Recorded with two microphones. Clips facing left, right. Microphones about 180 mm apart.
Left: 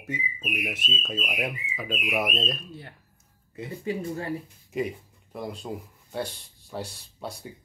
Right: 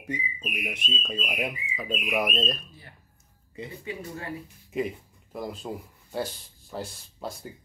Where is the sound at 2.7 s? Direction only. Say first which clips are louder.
Left 9 dB; 60° left (ahead or behind).